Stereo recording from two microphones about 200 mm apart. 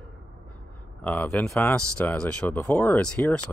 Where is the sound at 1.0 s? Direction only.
5° left (ahead or behind).